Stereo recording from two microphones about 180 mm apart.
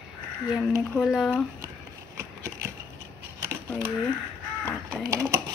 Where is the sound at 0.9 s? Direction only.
Centre (ahead or behind).